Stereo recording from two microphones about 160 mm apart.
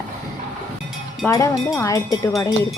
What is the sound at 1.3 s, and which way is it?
Speech, 20° left (ahead or behind).